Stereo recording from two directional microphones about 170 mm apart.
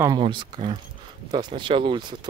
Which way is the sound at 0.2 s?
30° right (ahead or behind).